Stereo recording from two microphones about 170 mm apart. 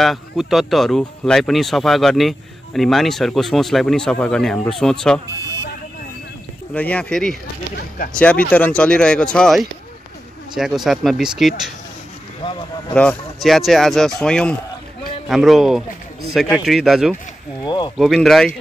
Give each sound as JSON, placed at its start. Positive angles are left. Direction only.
{"t": 0.0, "sound": "speech", "side_deg": 0}
{"t": 6.7, "sound": "speech", "side_deg": 10}
{"t": 12.9, "sound": "speech", "side_deg": 5}
{"t": 17.6, "sound": "speech", "side_deg": 25}
{"t": 17.9, "sound": "speech", "side_deg": 0}